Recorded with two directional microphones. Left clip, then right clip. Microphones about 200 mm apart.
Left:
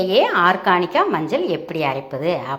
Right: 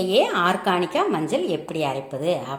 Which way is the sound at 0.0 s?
5° left (ahead or behind).